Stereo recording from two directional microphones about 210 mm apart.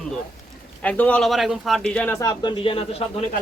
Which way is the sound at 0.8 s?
5° left (ahead or behind).